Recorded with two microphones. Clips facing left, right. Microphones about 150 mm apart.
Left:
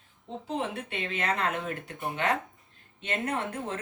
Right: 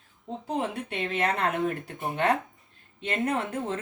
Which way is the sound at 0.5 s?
35° right (ahead or behind).